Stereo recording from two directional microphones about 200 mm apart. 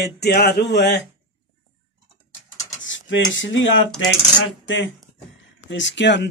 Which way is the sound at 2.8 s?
70° left (ahead or behind).